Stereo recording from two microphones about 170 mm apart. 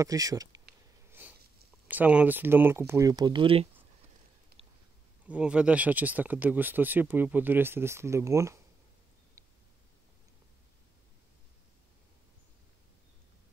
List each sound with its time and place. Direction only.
0.0 s speech: 20° right (ahead or behind)
1.2 s sniff: 10° right (ahead or behind)
1.9 s speech: 10° right (ahead or behind); by 3.6 s 30° right (ahead or behind)
4.6 s biting: 35° right (ahead or behind)
5.2 s speech: 5° right (ahead or behind)